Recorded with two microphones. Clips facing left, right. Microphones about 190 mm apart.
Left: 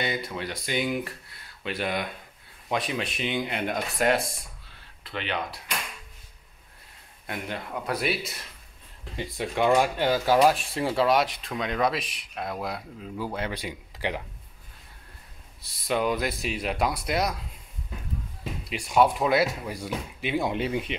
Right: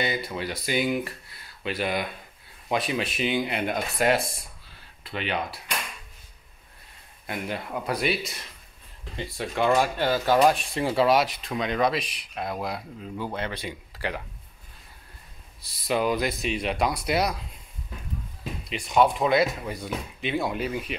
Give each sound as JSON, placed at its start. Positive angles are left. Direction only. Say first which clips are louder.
{"t": 0.0, "sound": "speech", "louder": "right 2 dB", "side_deg": -5}
{"t": 7.2, "sound": "speech", "louder": "right 2 dB", "side_deg": -5}
{"t": 9.1, "sound": "speech", "louder": "left 1 dB", "side_deg": 15}
{"t": 15.6, "sound": "speech", "louder": "right 1 dB", "side_deg": 0}
{"t": 18.7, "sound": "speech", "louder": "even", "side_deg": 10}
{"t": 20.5, "sound": "speech", "louder": "left 1 dB", "side_deg": 25}